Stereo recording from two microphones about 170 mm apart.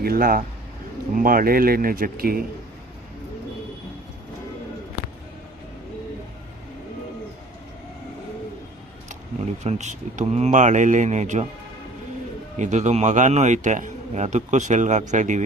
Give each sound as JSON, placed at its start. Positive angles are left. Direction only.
{"t": 0.0, "sound": "speech", "side_deg": -60}
{"t": 9.6, "sound": "a man's voice", "side_deg": -45}
{"t": 12.5, "sound": "a man's voice", "side_deg": -45}